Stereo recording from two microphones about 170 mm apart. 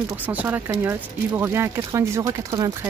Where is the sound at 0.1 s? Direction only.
10° right (ahead or behind).